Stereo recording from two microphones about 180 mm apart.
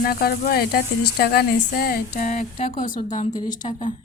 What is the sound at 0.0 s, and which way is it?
A woman's voice, 55° left (ahead or behind).